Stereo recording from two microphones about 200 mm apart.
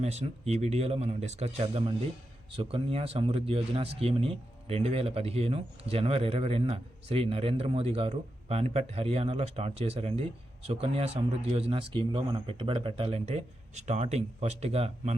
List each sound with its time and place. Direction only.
0.0 s speech: 35° right (ahead or behind)